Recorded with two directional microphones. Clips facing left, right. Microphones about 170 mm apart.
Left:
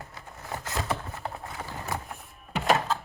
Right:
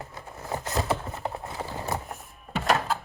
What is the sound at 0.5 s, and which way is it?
Horse, 30° right (ahead or behind).